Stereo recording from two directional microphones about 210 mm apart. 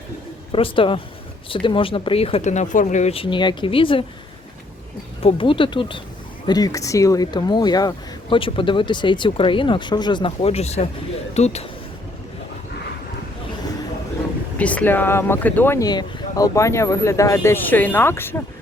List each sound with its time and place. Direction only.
0.5 s speech: 25° left (ahead or behind)
5.2 s speech: 25° left (ahead or behind)
14.6 s speech: 5° left (ahead or behind)